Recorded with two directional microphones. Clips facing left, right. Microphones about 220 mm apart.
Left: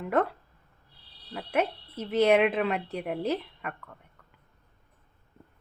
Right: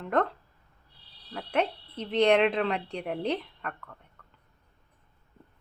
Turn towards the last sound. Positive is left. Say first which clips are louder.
# right 1 dB
turn(degrees=10)  # may be behind; listen again after turning